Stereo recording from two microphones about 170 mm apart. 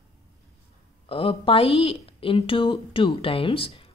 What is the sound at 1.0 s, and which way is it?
A woman's voice, 35° left (ahead or behind).